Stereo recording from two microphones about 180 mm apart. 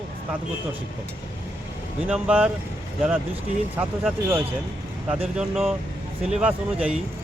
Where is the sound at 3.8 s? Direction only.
10° right (ahead or behind).